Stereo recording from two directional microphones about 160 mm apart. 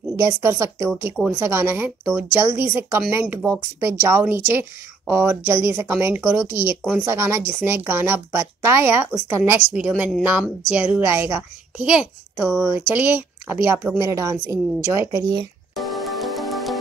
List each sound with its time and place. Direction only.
0.1 s a child's voice: 20° right (ahead or behind)
15.7 s music: centre (ahead or behind)